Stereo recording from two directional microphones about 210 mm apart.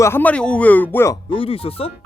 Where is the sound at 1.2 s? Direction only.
25° left (ahead or behind).